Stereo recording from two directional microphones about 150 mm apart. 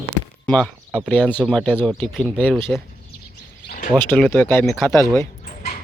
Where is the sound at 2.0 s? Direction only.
10° left (ahead or behind).